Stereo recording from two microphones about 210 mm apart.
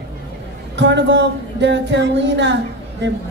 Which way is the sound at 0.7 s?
55° right (ahead or behind).